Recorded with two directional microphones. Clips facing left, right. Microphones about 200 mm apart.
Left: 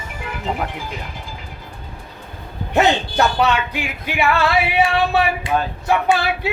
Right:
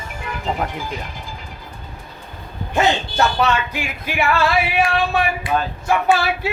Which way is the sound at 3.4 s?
15° left (ahead or behind).